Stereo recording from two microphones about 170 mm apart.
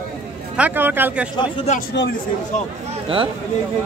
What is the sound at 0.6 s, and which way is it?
Speech, 10° right (ahead or behind).